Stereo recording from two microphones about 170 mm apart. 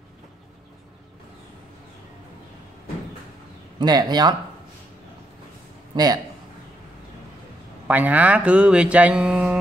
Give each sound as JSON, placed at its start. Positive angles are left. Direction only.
{"t": 3.8, "sound": "speech", "side_deg": -25}
{"t": 5.9, "sound": "speech", "side_deg": -25}
{"t": 7.9, "sound": "speech", "side_deg": -10}